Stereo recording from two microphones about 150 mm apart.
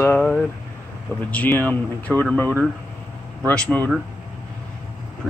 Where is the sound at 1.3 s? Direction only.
10° left (ahead or behind).